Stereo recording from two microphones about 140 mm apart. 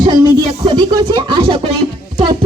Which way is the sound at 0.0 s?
35° right (ahead or behind).